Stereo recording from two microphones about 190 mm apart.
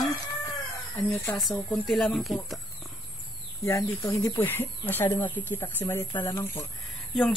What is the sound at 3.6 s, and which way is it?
Speech, 15° left (ahead or behind).